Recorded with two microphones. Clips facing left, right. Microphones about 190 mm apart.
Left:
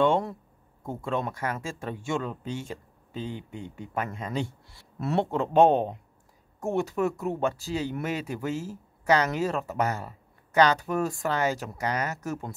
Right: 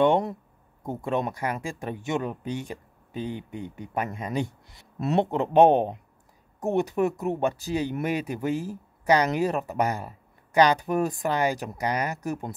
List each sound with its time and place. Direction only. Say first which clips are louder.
0.0 s speech: right 2 dB; 20° right (ahead or behind)